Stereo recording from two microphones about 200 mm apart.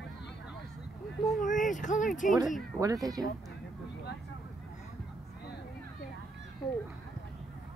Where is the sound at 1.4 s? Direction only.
40° left (ahead or behind).